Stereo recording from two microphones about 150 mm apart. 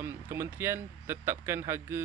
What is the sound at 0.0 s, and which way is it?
Speech, 15° right (ahead or behind).